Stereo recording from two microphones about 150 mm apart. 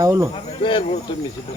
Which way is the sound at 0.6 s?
35° left (ahead or behind).